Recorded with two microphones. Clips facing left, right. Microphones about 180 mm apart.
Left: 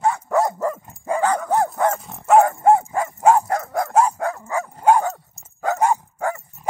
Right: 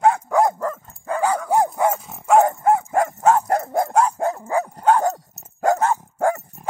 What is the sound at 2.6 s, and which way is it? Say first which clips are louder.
Dog: left 3 dB; 25° left (ahead or behind).